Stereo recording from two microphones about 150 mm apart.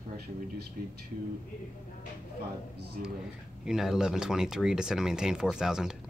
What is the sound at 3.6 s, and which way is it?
Speech, 5° right (ahead or behind).